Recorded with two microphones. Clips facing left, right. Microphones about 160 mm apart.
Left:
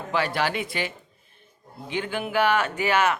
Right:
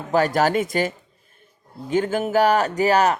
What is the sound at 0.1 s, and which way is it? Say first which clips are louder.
Speech: right 7 dB; 45° right (ahead or behind).